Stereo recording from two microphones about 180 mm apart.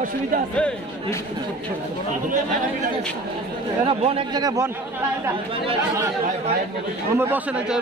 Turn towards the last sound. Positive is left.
turn(degrees=-10)  # may be behind; listen again after turning